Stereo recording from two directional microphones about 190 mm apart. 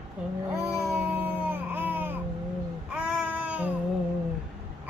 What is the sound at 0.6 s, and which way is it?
Child singing, 15° right (ahead or behind).